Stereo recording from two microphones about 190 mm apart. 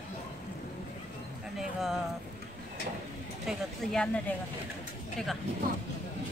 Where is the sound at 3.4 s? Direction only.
5° left (ahead or behind).